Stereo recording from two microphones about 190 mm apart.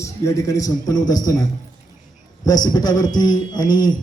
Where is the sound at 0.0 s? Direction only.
15° left (ahead or behind).